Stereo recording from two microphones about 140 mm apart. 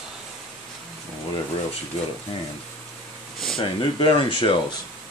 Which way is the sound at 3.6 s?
40° left (ahead or behind).